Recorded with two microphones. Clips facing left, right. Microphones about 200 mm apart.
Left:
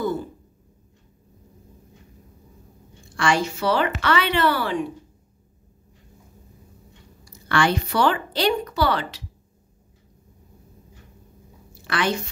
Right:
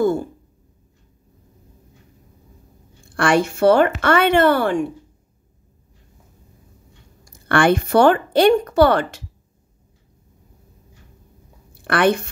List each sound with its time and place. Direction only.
0.0 s a sound: 50° right (ahead or behind)
3.2 s a woman's voice: 60° right (ahead or behind)
7.2 s a woman's voice: 55° right (ahead or behind)
11.7 s speech: 60° right (ahead or behind)